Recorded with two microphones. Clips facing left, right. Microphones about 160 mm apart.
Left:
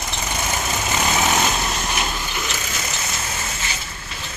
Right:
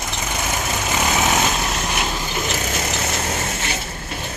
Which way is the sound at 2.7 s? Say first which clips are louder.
Right 5 dB; 55° right (ahead or behind).